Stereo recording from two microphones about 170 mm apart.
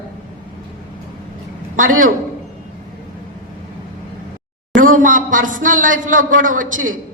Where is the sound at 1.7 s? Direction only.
50° right (ahead or behind).